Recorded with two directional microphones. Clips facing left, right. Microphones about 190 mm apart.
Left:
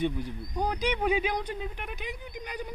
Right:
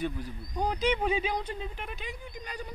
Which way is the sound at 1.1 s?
15° left (ahead or behind).